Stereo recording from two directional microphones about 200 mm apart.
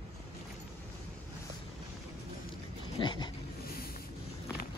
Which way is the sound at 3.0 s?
25° left (ahead or behind).